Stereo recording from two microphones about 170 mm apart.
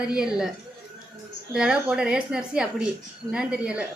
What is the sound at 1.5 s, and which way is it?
A woman's voice, 5° right (ahead or behind).